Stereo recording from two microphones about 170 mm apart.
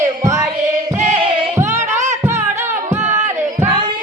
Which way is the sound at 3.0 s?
45° right (ahead or behind).